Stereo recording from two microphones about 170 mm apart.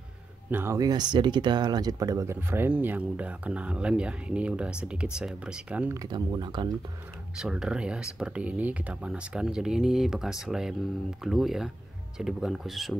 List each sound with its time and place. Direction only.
0.5 s speech: 15° right (ahead or behind)
5.9 s speech: 25° right (ahead or behind)
7.3 s speech: 5° right (ahead or behind)